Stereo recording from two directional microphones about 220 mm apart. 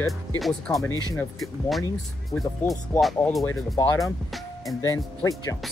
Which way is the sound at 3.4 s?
15° left (ahead or behind).